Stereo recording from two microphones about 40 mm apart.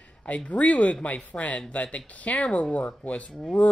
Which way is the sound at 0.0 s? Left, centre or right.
Left.